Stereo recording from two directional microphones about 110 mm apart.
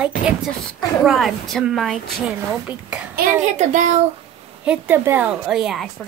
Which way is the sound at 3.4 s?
90° right.